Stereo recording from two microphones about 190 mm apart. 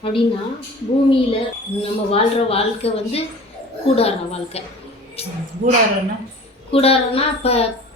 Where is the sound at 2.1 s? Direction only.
30° left (ahead or behind).